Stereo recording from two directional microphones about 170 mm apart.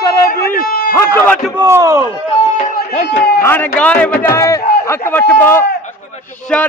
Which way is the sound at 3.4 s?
10° left (ahead or behind).